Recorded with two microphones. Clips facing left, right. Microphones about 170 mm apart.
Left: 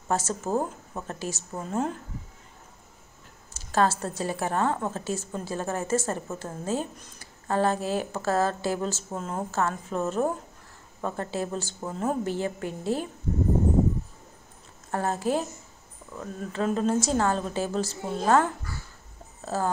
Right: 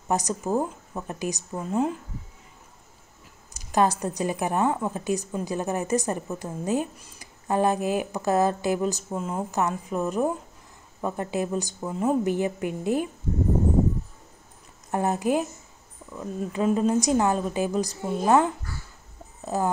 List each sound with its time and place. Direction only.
0.1 s speech: 15° right (ahead or behind)
0.5 s speech: centre (ahead or behind)
1.0 s speech: 15° right (ahead or behind)
1.5 s speech: centre (ahead or behind)
3.5 s speech: 15° right (ahead or behind)
11.8 s speech: centre (ahead or behind)
12.3 s speech: 15° right (ahead or behind)
14.9 s speech: 15° right (ahead or behind)